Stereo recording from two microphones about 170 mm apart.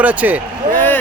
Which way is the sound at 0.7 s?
10° left (ahead or behind).